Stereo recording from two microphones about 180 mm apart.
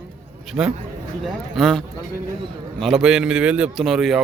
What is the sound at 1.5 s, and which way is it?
Speech, centre (ahead or behind).